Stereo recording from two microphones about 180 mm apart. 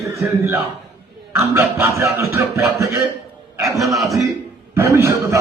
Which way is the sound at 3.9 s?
Centre (ahead or behind).